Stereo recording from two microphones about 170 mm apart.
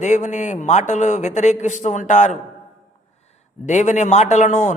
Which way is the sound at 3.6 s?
45° left (ahead or behind).